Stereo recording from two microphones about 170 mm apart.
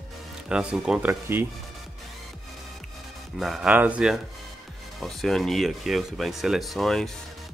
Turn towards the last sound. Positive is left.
turn(degrees=0)  # may be behind; listen again after turning